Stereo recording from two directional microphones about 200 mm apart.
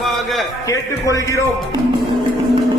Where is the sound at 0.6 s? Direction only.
15° left (ahead or behind).